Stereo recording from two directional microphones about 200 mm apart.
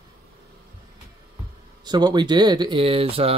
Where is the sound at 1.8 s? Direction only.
20° right (ahead or behind).